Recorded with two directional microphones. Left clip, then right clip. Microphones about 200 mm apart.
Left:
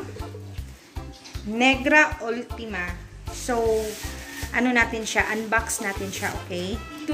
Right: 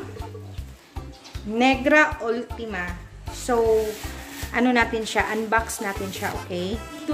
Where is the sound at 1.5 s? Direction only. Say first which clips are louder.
Even; centre (ahead or behind).